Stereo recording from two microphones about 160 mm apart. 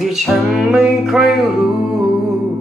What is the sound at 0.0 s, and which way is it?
Music, centre (ahead or behind).